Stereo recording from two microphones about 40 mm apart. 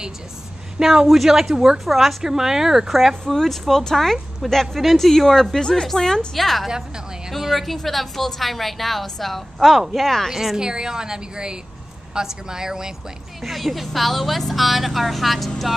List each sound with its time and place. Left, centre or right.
0.7 s a woman's voice: centre
1.9 s a woman's voice: centre
2.9 s a woman's voice: centre
5.6 s a woman's voice: centre
7.2 s a woman's voice: centre
7.5 s a woman's voice: centre
10.3 s a woman's voice: centre
13.4 s a woman's voice: centre